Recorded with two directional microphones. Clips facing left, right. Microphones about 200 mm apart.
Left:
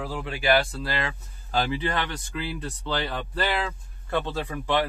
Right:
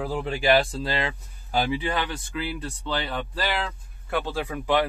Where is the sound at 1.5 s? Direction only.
10° right (ahead or behind).